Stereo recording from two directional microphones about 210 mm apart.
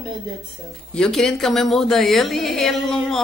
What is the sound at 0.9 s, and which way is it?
A woman's voice, 5° left (ahead or behind).